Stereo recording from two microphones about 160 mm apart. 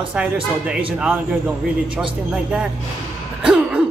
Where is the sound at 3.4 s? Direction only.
5° right (ahead or behind).